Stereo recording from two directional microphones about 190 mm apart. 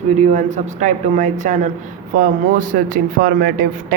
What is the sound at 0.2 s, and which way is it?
A man's voice, 40° right (ahead or behind).